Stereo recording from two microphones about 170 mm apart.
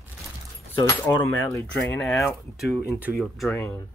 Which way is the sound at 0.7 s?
20° left (ahead or behind).